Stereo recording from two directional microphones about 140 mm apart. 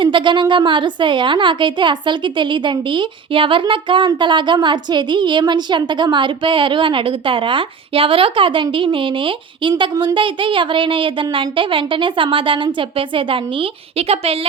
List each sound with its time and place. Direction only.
0.0 s a woman's voice: 35° right (ahead or behind)